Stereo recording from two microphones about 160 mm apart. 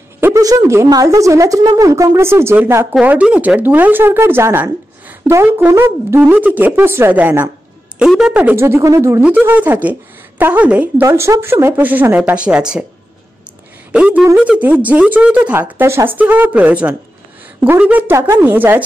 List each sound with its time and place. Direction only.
0.2 s a woman's voice: 20° right (ahead or behind)
13.9 s speech: 10° right (ahead or behind)